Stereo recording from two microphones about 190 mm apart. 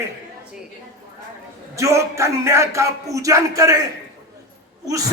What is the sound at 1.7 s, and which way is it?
Speech, 15° right (ahead or behind).